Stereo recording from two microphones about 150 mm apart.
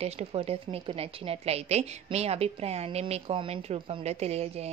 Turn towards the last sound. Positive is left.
turn(degrees=-45)  # may be behind; listen again after turning